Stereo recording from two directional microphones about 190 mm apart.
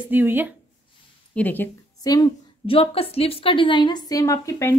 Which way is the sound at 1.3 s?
10° left (ahead or behind).